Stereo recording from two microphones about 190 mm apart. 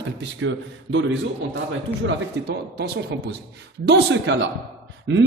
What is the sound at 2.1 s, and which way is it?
Speech, 60° right (ahead or behind).